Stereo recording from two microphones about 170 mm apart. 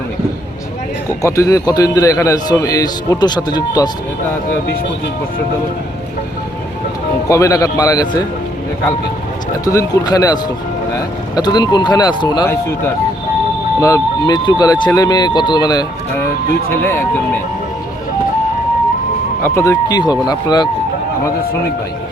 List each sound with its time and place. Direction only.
1.2 s a man's voice: 20° left (ahead or behind)
7.3 s a man's voice: 20° left (ahead or behind)
9.6 s a man's voice: 20° left (ahead or behind)
13.8 s a man's voice: 20° left (ahead or behind)
19.4 s a man's voice: 15° left (ahead or behind)